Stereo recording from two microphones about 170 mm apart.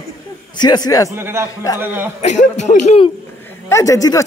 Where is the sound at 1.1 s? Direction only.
15° right (ahead or behind).